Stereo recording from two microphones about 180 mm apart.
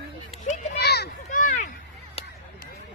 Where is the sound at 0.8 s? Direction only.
65° left (ahead or behind).